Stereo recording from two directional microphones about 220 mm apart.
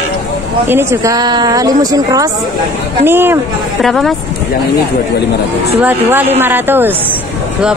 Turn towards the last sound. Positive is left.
turn(degrees=-10)  # may be behind; listen again after turning